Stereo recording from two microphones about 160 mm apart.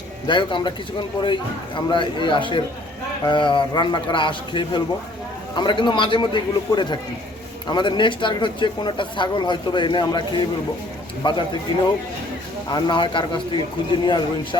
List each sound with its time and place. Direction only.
0.3 s a man's voice: 30° left (ahead or behind)
12.7 s speech: 30° left (ahead or behind)